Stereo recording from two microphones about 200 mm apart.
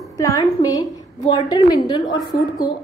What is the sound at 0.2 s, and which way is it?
A woman's voice, 15° left (ahead or behind).